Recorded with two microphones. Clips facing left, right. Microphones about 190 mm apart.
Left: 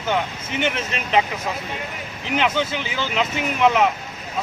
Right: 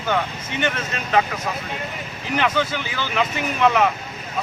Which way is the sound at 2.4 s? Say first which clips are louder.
Even; 20° left (ahead or behind).